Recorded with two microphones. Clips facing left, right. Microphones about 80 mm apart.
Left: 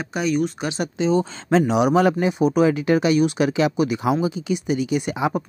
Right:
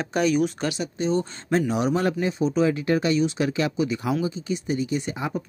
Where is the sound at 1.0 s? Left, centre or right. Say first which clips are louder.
Left 5 dB; left.